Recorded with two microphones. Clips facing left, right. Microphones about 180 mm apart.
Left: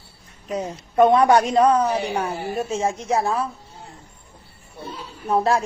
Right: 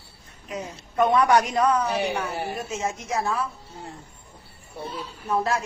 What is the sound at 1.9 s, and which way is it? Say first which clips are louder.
Speech: left 2 dB; 65° right (ahead or behind).